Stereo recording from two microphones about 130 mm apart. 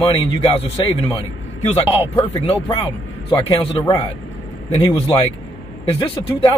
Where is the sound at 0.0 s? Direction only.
45° left (ahead or behind).